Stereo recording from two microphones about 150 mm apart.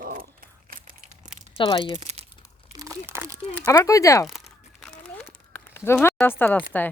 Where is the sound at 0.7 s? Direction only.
65° right (ahead or behind).